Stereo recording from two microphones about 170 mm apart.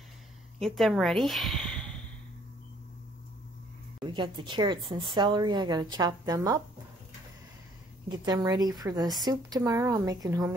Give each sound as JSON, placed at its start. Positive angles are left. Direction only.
{"t": 0.6, "sound": "speech", "side_deg": 0}
{"t": 4.0, "sound": "a woman's voice", "side_deg": -25}
{"t": 8.3, "sound": "a woman's voice", "side_deg": -25}